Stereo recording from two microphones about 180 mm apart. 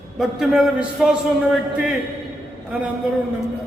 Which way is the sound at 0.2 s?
Centre (ahead or behind).